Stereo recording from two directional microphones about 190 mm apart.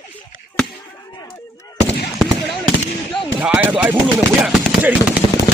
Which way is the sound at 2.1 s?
Centre (ahead or behind).